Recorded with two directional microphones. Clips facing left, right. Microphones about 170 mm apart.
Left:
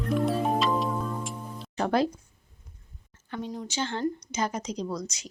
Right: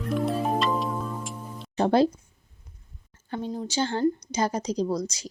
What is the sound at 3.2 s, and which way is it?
A woman's voice, 30° right (ahead or behind).